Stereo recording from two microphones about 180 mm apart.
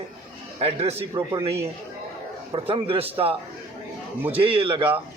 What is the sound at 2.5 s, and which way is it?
A man's voice, 30° right (ahead or behind).